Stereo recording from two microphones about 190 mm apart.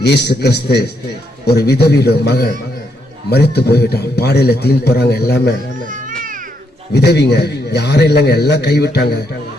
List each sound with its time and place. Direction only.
0.0 s a man's voice: 60° left (ahead or behind)
5.8 s cat: 45° right (ahead or behind)
6.9 s a man's voice: 60° left (ahead or behind)